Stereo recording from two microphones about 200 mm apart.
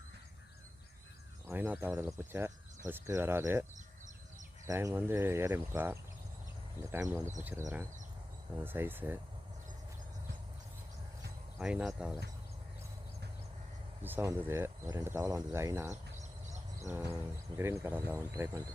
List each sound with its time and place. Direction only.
1.5 s cricket: 10° right (ahead or behind)
11.5 s speech: 5° right (ahead or behind)
14.0 s cricket: 10° right (ahead or behind)
16.1 s a sound: 35° right (ahead or behind)
16.9 s cricket: 15° right (ahead or behind)